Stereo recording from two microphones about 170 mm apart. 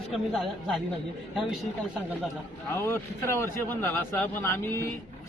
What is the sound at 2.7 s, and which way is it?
A man's voice, 15° left (ahead or behind).